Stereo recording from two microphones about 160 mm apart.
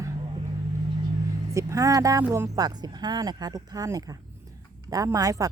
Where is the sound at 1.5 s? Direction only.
20° right (ahead or behind).